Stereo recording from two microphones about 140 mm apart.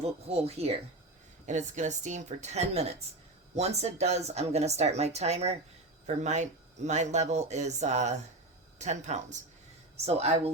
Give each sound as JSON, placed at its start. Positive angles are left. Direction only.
{"t": 0.0, "sound": "speech", "side_deg": -45}
{"t": 1.5, "sound": "speech", "side_deg": -60}